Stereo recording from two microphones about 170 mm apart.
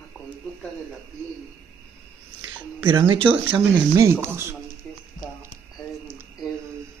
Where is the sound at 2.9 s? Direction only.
30° right (ahead or behind).